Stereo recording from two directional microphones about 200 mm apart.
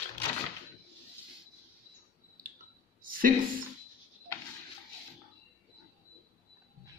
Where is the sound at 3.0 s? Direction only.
45° right (ahead or behind).